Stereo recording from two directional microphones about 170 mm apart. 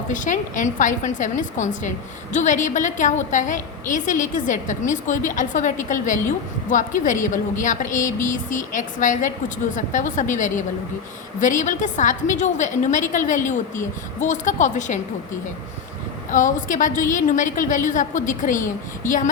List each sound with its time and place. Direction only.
0.1 s a woman's voice: 50° left (ahead or behind)
16.3 s a woman's voice: 50° left (ahead or behind)